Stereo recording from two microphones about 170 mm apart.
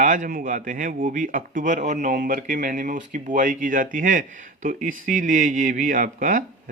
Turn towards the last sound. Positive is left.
turn(degrees=-50)  # may be behind; listen again after turning